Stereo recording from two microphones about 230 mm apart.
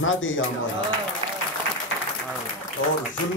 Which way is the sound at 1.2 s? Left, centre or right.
Right.